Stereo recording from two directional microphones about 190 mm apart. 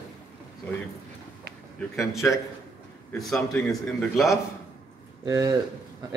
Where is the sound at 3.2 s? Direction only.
Centre (ahead or behind).